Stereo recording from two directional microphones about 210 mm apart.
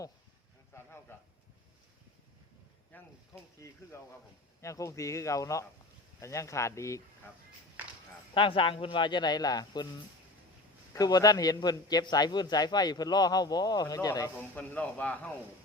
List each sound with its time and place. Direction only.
0.7 s a sound: 10° left (ahead or behind)
2.9 s a sound: 10° left (ahead or behind)
4.6 s speech: 15° left (ahead or behind)
8.3 s a man's voice: 25° left (ahead or behind)
10.9 s a man's voice: 15° left (ahead or behind)
14.3 s speech: 5° left (ahead or behind)